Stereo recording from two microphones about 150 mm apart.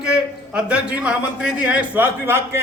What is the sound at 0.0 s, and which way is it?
A man's voice, 5° right (ahead or behind).